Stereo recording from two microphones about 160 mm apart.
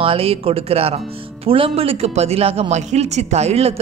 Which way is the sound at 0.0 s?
35° right (ahead or behind).